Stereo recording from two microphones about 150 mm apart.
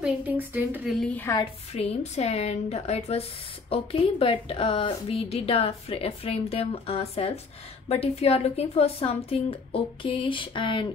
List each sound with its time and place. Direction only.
0.0 s a woman's voice: 10° right (ahead or behind)
0.8 s a woman's voice: centre (ahead or behind)
1.4 s a woman's voice: 40° left (ahead or behind)